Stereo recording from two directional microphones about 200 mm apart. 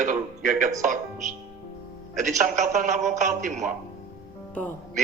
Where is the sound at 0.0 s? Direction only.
40° right (ahead or behind).